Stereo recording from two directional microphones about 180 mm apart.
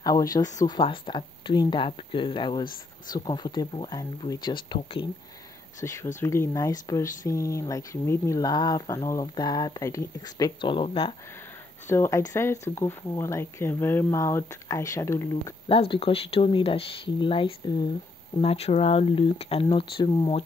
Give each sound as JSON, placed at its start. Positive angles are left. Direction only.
{"t": 0.0, "sound": "speech", "side_deg": 20}
{"t": 6.1, "sound": "speech", "side_deg": 15}
{"t": 11.9, "sound": "speech", "side_deg": 15}
{"t": 15.7, "sound": "speech", "side_deg": 30}